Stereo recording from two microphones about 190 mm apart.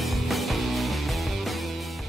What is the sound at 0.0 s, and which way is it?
Music, centre (ahead or behind).